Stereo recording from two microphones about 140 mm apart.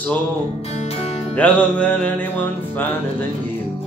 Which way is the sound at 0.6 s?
50° left (ahead or behind).